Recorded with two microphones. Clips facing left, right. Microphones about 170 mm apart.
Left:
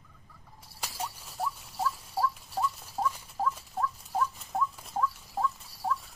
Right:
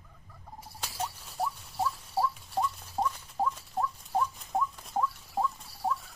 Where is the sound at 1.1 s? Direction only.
Centre (ahead or behind).